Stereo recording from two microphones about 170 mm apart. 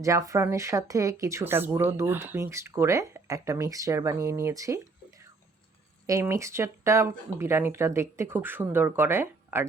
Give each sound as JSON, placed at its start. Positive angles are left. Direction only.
{"t": 0.0, "sound": "speech", "side_deg": -20}
{"t": 6.1, "sound": "speech", "side_deg": -15}